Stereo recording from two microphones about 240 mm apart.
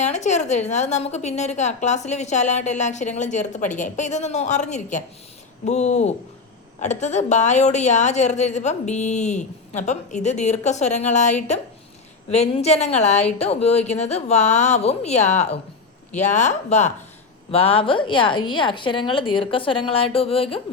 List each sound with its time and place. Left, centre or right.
0.0 s a woman's voice: left